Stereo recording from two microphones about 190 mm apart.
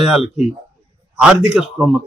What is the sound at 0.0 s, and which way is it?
Speech, centre (ahead or behind).